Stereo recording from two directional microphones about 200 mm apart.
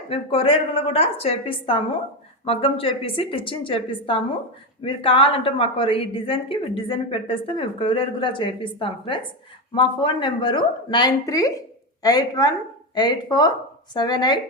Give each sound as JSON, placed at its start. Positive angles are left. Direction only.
{"t": 0.1, "sound": "a woman's voice", "side_deg": 25}